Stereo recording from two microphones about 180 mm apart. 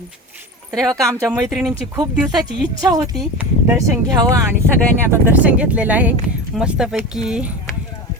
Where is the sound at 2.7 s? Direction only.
20° right (ahead or behind).